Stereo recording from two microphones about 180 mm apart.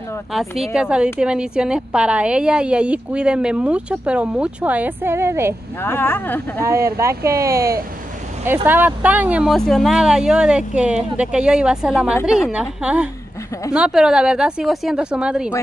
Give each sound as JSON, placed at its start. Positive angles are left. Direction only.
{"t": 0.3, "sound": "a woman's voice", "side_deg": 0}
{"t": 5.8, "sound": "speech", "side_deg": 10}
{"t": 6.6, "sound": "a woman's voice", "side_deg": -15}